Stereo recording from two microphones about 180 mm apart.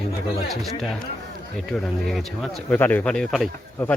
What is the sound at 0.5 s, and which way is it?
Speech, centre (ahead or behind).